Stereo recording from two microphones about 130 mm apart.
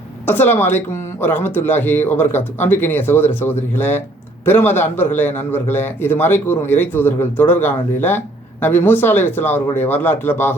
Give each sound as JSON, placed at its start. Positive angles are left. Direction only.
{"t": 0.3, "sound": "a man's voice", "side_deg": 15}